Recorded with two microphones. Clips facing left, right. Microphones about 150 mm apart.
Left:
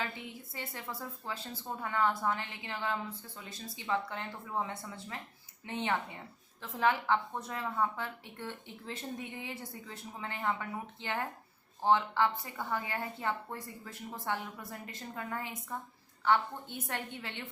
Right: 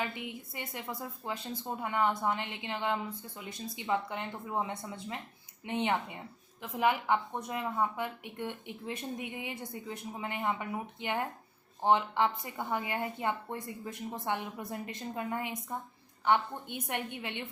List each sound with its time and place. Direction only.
0.0 s a woman's voice: 15° right (ahead or behind)